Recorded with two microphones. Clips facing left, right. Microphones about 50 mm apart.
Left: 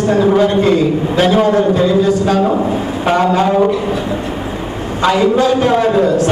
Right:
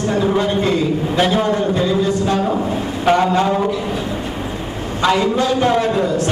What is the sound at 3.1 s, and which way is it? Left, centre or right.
Speech, centre.